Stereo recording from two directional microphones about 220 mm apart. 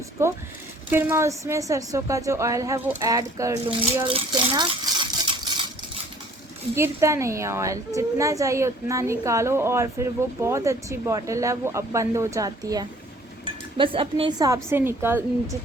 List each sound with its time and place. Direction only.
0.9 s a woman's voice: 10° right (ahead or behind)
6.7 s a woman's voice: 10° right (ahead or behind)